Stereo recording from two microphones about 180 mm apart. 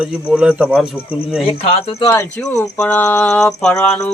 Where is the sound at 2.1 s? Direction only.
15° left (ahead or behind).